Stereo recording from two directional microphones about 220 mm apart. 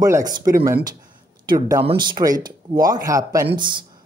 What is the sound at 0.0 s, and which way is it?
Speech, 15° right (ahead or behind).